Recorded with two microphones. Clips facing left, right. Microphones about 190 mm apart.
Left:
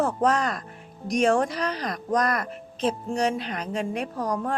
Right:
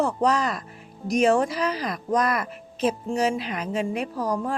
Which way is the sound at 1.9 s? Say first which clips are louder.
Left 2 dB; 40° left (ahead or behind).